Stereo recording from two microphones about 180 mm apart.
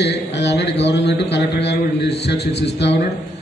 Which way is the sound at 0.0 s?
75° left (ahead or behind).